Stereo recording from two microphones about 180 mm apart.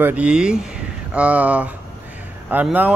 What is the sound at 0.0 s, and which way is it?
Speech, 5° right (ahead or behind).